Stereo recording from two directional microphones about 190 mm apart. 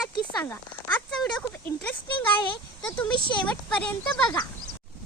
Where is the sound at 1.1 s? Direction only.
Centre (ahead or behind).